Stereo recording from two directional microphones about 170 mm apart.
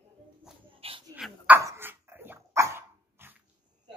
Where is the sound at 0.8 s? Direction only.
35° right (ahead or behind).